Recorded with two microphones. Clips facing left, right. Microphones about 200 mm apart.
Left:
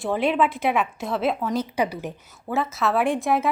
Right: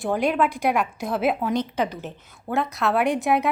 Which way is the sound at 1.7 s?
10° left (ahead or behind).